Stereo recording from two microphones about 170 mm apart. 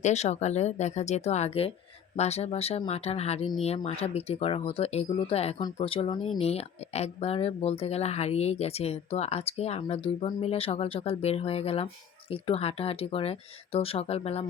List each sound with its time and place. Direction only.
0.0 s speech: 40° left (ahead or behind)